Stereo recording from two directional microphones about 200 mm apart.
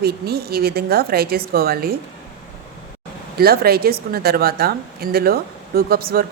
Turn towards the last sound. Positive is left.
turn(degrees=-50)  # may be behind; listen again after turning